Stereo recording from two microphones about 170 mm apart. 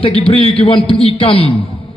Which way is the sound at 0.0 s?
35° left (ahead or behind).